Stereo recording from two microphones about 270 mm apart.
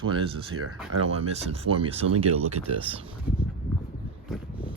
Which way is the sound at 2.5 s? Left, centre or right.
Right.